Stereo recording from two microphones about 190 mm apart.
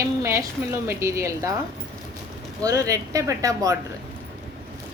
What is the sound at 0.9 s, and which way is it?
Speech, 15° right (ahead or behind).